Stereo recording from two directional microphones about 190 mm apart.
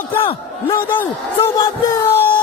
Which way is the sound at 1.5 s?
15° left (ahead or behind).